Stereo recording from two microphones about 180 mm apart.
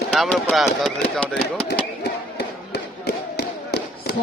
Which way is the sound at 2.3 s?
65° left (ahead or behind).